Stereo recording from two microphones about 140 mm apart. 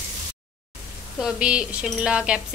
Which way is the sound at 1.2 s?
5° right (ahead or behind).